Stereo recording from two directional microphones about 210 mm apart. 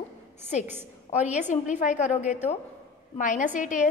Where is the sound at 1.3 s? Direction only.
35° left (ahead or behind).